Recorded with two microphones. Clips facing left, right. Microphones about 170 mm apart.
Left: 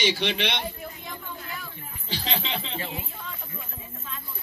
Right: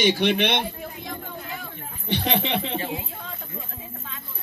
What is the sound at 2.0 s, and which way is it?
Speech, 60° right (ahead or behind).